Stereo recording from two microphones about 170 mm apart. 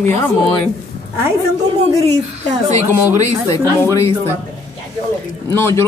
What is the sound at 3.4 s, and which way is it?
Speech, 20° left (ahead or behind).